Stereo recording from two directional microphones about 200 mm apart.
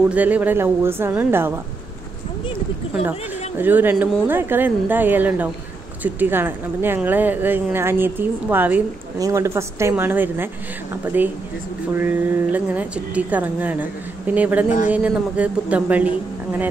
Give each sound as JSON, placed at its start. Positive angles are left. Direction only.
{"t": 0.1, "sound": "speech", "side_deg": -10}
{"t": 2.9, "sound": "speech", "side_deg": -10}